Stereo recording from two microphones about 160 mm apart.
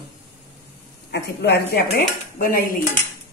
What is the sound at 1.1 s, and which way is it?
Speech, 90° left.